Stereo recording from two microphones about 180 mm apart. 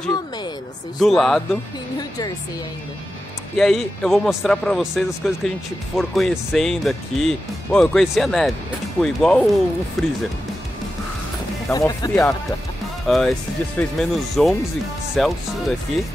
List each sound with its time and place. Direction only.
0.9 s speech: centre (ahead or behind)
2.0 s speech: 20° left (ahead or behind)
3.5 s speech: centre (ahead or behind)
11.7 s speech: 20° left (ahead or behind)
13.0 s speech: centre (ahead or behind)